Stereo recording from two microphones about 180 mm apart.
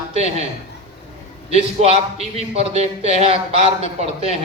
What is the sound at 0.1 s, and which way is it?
Speech, 35° right (ahead or behind).